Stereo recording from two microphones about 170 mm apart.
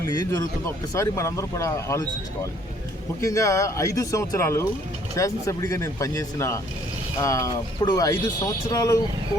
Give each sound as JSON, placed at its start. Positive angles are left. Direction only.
{"t": 0.0, "sound": "speech", "side_deg": 20}